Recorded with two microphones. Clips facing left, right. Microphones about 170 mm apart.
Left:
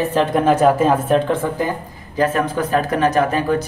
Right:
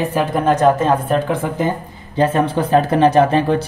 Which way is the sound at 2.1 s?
30° right (ahead or behind).